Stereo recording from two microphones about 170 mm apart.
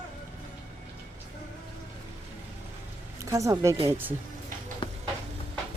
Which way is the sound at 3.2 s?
20° right (ahead or behind).